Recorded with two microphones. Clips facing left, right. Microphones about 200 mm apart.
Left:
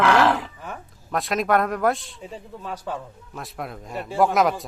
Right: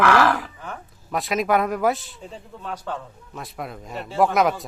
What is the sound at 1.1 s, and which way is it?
Speech, centre (ahead or behind).